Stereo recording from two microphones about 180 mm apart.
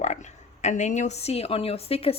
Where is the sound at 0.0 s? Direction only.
40° left (ahead or behind).